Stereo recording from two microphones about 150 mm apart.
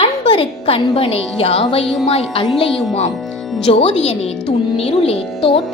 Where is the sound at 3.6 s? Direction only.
40° left (ahead or behind).